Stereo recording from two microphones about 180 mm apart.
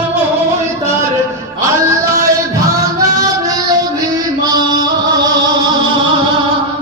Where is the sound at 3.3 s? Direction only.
20° right (ahead or behind).